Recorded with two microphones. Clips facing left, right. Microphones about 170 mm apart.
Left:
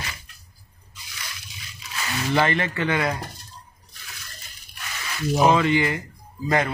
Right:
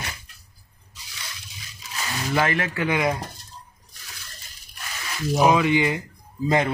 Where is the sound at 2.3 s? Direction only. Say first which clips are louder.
Left 1 dB; 5° right (ahead or behind).